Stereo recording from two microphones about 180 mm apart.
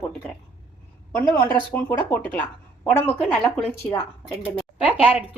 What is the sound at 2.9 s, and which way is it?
Speech, 10° left (ahead or behind).